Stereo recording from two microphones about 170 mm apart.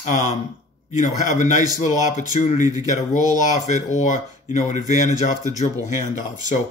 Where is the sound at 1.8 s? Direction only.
45° left (ahead or behind).